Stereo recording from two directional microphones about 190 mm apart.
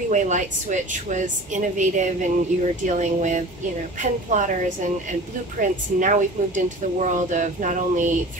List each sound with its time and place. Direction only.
0.1 s speech: 40° right (ahead or behind)
5.6 s speech: 40° right (ahead or behind)